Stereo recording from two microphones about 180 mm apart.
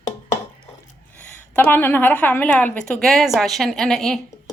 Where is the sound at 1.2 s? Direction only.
10° left (ahead or behind).